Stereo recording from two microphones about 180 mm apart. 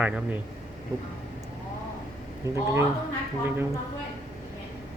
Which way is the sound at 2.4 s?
15° right (ahead or behind).